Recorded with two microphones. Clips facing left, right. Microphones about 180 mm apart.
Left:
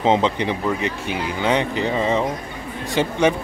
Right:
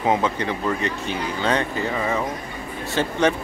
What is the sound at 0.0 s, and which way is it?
Speech, 20° left (ahead or behind).